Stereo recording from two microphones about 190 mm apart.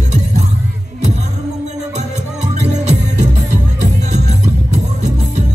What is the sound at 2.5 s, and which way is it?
Music, 35° right (ahead or behind).